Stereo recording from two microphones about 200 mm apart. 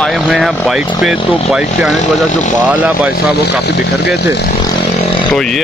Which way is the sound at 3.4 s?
55° left (ahead or behind).